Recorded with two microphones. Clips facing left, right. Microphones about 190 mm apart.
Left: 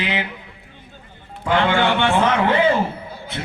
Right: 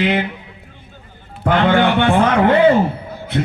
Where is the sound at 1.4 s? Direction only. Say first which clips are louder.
Right 4 dB; 55° right (ahead or behind).